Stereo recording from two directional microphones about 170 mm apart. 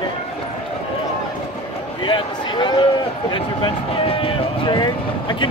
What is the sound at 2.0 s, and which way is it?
Speech, 25° left (ahead or behind).